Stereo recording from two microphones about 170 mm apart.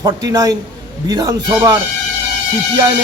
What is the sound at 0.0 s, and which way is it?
A man's voice, 20° right (ahead or behind).